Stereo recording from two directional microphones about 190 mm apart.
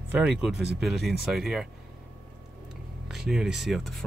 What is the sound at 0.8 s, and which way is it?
Speech, centre (ahead or behind).